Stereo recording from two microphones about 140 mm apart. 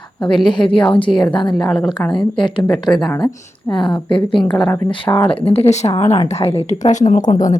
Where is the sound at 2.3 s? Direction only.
35° left (ahead or behind).